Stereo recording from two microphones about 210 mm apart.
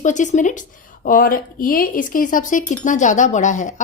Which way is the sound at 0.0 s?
35° left (ahead or behind).